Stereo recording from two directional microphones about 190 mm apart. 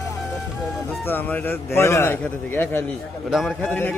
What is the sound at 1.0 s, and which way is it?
A man's voice, 10° left (ahead or behind).